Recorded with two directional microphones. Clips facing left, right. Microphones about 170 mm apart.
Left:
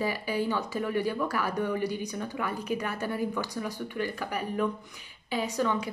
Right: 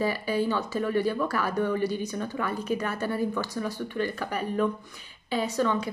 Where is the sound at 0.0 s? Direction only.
15° left (ahead or behind).